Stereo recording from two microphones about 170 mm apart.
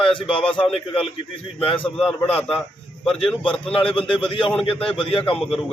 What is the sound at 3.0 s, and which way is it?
Speech, 5° left (ahead or behind).